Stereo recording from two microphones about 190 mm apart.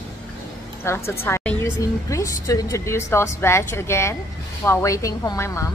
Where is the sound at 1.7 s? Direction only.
15° left (ahead or behind).